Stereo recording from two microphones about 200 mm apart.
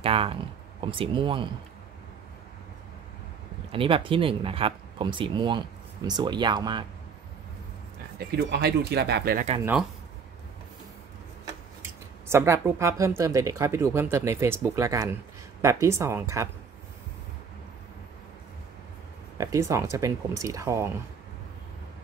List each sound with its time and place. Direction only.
0.0 s speech: 30° right (ahead or behind)
3.7 s speech: 25° right (ahead or behind)
8.2 s speech: 55° right (ahead or behind)
12.3 s speech: 15° right (ahead or behind)
19.3 s speech: 15° right (ahead or behind)